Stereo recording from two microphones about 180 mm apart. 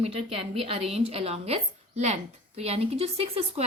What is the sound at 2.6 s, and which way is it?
A woman's voice, 35° right (ahead or behind).